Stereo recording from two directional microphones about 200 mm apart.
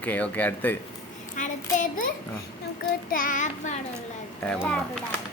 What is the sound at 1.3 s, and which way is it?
Child singing, 40° left (ahead or behind).